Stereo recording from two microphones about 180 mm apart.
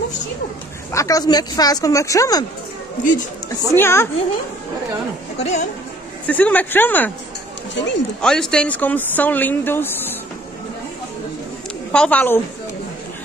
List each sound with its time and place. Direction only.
0.9 s speech: 20° left (ahead or behind)
3.4 s speech: 15° left (ahead or behind)
5.4 s speech: 40° left (ahead or behind)
6.2 s speech: 10° left (ahead or behind)
7.7 s speech: 80° left
8.2 s speech: 5° left (ahead or behind)
11.9 s speech: 5° left (ahead or behind)